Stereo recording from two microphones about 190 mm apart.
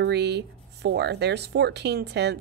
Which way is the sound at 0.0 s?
65° right (ahead or behind).